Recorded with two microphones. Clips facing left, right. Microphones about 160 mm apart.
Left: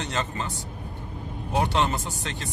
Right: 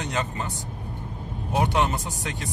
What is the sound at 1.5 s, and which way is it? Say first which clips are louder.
Speech: right 1 dB; 15° right (ahead or behind).